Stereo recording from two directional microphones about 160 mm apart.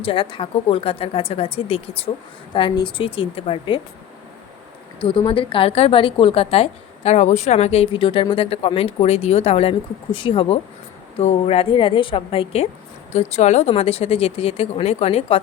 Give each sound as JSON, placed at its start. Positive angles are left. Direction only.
{"t": 0.0, "sound": "a woman's voice", "side_deg": 35}
{"t": 5.0, "sound": "a woman's voice", "side_deg": 35}